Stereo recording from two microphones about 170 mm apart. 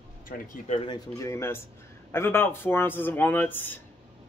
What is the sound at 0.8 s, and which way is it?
Speech, 20° left (ahead or behind).